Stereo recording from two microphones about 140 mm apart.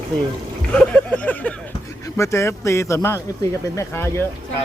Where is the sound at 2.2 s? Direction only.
20° left (ahead or behind).